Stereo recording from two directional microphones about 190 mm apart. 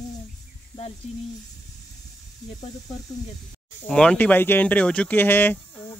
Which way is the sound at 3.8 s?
5° left (ahead or behind).